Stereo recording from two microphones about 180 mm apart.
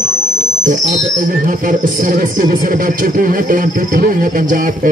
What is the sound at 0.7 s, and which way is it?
Speech, 45° right (ahead or behind).